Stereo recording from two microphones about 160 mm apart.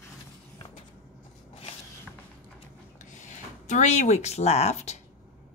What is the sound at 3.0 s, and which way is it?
Speech, 50° left (ahead or behind).